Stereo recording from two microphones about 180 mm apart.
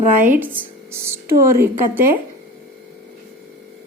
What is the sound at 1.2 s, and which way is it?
Speech, 15° right (ahead or behind).